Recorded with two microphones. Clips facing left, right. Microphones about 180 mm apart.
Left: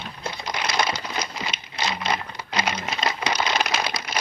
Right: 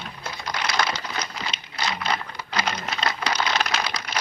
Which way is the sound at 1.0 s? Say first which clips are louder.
Left 2 dB; 20° left (ahead or behind).